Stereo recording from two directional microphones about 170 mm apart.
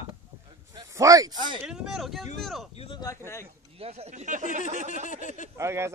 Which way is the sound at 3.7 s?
35° right (ahead or behind).